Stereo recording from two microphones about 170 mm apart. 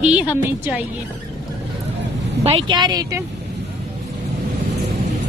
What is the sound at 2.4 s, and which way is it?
Speech, 30° right (ahead or behind).